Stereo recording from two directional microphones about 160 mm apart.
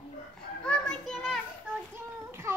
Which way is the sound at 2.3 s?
15° right (ahead or behind).